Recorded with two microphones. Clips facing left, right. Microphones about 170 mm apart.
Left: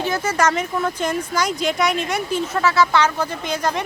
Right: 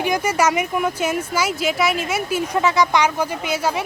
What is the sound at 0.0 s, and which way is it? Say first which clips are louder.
Speech: right 1 dB; 10° right (ahead or behind).